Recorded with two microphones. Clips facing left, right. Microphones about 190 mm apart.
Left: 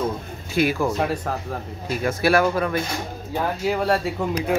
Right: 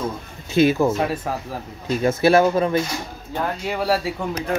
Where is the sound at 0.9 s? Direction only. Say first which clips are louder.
Right 1 dB; 5° right (ahead or behind).